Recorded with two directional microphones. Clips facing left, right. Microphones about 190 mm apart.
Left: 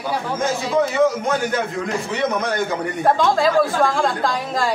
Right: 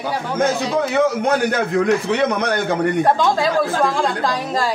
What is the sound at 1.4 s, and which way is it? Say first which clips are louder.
A man's voice: right 6 dB; 70° right (ahead or behind).